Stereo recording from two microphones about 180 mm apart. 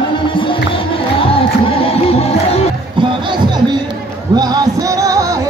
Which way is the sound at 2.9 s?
25° right (ahead or behind).